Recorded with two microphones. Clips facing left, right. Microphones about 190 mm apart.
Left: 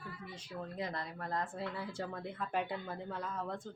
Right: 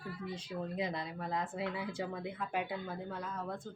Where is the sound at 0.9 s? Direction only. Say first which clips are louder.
Right 2 dB; 15° right (ahead or behind).